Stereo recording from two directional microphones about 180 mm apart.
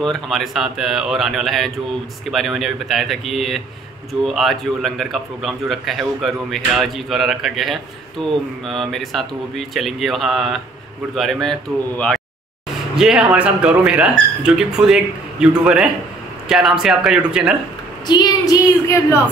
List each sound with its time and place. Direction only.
0.0 s a man's voice: centre (ahead or behind)
12.9 s a man's voice: 5° right (ahead or behind)
18.0 s a woman's voice: 25° left (ahead or behind)